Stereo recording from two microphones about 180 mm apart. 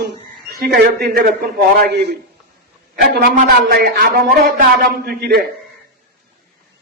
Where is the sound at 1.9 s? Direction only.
65° right (ahead or behind).